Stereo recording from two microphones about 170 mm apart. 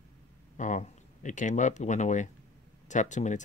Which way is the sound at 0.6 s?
45° left (ahead or behind).